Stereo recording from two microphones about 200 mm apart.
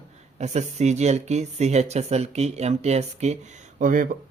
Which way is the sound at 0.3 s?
35° right (ahead or behind).